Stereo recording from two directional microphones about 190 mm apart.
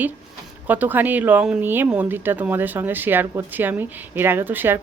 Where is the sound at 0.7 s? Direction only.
10° right (ahead or behind).